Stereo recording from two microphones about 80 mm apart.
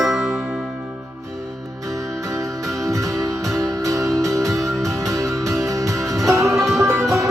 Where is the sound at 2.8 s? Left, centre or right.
Right.